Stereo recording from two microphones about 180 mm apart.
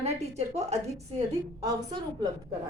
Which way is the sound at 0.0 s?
35° right (ahead or behind).